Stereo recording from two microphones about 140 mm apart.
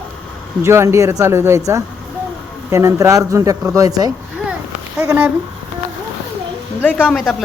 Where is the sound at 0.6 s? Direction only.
20° right (ahead or behind).